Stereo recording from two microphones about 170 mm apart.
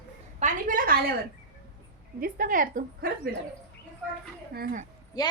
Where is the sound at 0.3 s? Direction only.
50° right (ahead or behind).